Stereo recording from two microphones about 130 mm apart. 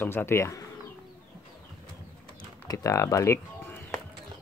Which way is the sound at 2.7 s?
25° left (ahead or behind).